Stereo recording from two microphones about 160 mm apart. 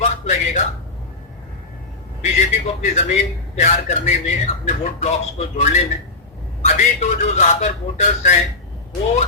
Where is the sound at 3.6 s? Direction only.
45° left (ahead or behind).